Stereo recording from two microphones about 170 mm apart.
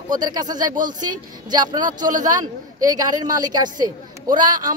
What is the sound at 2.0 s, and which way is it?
Speech, 50° right (ahead or behind).